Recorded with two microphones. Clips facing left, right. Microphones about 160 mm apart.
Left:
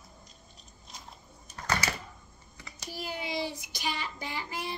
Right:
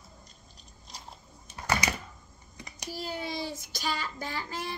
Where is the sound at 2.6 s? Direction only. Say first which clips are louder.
Right 3 dB; 15° right (ahead or behind).